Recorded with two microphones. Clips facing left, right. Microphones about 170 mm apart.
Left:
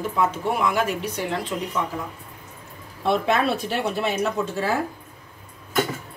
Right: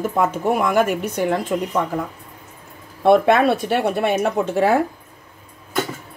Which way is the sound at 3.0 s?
55° right (ahead or behind).